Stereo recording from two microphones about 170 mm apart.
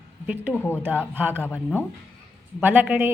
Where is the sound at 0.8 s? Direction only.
10° right (ahead or behind).